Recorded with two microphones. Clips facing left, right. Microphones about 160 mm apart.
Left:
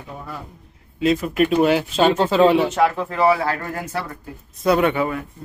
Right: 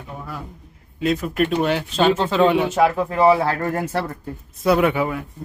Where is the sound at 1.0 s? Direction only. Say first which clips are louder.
Left 2 dB; centre (ahead or behind).